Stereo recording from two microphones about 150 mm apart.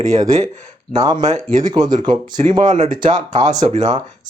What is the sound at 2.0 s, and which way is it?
Speech, 60° right (ahead or behind).